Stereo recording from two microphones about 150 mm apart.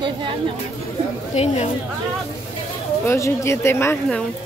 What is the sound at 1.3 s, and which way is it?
Speech, 45° left (ahead or behind).